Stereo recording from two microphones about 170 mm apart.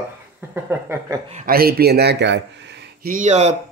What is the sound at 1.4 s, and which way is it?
Speech, 60° right (ahead or behind).